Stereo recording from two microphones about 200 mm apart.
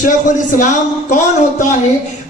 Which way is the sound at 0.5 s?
40° left (ahead or behind).